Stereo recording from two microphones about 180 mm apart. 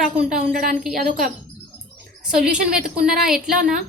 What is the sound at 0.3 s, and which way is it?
Speech, 50° right (ahead or behind).